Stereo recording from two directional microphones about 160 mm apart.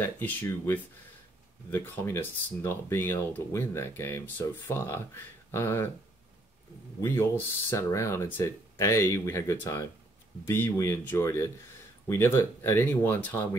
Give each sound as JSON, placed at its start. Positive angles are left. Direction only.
{"t": 0.0, "sound": "speech", "side_deg": 10}
{"t": 7.0, "sound": "speech", "side_deg": 15}